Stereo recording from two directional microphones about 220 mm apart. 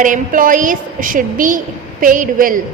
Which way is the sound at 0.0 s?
35° right (ahead or behind).